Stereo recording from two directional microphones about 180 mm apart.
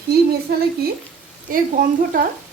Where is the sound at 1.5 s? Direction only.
50° right (ahead or behind).